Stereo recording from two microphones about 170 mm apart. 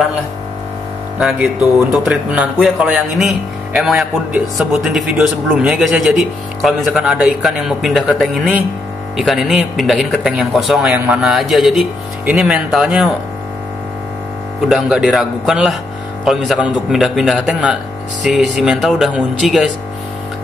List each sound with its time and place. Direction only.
1.2 s speech: 5° right (ahead or behind)
14.7 s speech: centre (ahead or behind)